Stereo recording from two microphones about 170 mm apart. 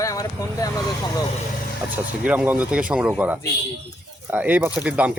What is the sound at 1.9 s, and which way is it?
Speech, 10° right (ahead or behind).